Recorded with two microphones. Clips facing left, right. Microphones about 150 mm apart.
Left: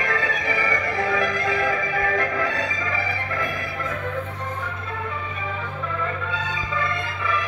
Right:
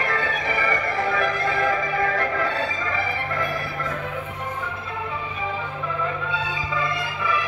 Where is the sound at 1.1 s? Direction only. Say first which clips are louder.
Left 1 dB; 10° left (ahead or behind).